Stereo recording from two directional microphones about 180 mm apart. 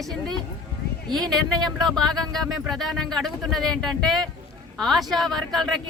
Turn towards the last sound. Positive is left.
turn(degrees=0)  # may be behind; listen again after turning